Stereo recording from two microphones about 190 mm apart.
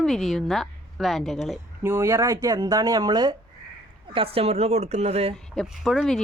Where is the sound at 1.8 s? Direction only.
15° right (ahead or behind); by 5.4 s 35° right (ahead or behind).